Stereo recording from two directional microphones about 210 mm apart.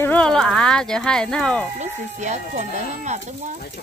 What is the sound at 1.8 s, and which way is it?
Speech, 35° right (ahead or behind).